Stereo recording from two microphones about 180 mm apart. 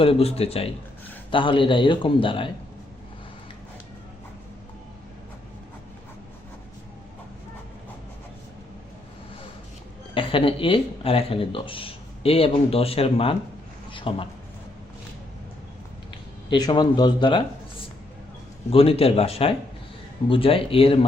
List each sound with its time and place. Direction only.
0.0 s a man's voice: 30° left (ahead or behind)
10.2 s speech: 30° left (ahead or behind)
13.9 s a sound: 30° left (ahead or behind)
16.5 s a man's voice: 25° left (ahead or behind)
18.7 s speech: 30° left (ahead or behind)